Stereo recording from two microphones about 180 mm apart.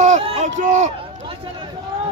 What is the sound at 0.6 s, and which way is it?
Speech, 40° right (ahead or behind).